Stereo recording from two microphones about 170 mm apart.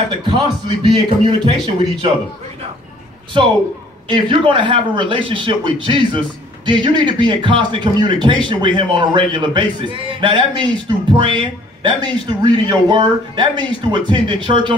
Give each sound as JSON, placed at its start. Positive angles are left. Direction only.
{"t": 0.2, "sound": "a man's voice", "side_deg": -25}
{"t": 4.1, "sound": "a man's voice", "side_deg": -30}